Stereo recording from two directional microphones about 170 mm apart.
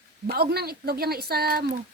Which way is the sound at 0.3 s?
70° right (ahead or behind).